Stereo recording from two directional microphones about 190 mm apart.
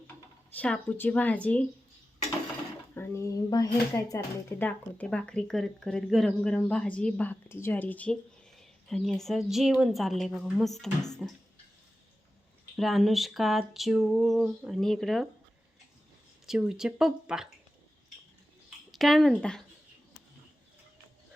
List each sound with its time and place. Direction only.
0.5 s speech: 5° left (ahead or behind)
2.9 s speech: 15° left (ahead or behind)
4.6 s speech: 5° left (ahead or behind)
12.7 s speech: centre (ahead or behind)
16.5 s speech: 5° right (ahead or behind)
18.9 s speech: centre (ahead or behind)